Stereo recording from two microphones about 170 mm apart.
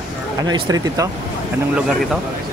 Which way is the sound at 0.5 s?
20° right (ahead or behind).